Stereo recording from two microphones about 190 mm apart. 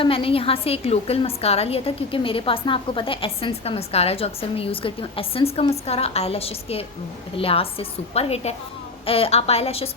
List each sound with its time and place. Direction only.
0.0 s a woman's voice: 30° left (ahead or behind)